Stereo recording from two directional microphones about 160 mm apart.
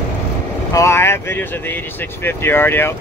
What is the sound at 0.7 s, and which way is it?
Speech, 15° left (ahead or behind).